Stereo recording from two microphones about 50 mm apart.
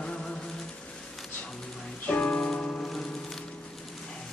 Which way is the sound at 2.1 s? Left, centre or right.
Left.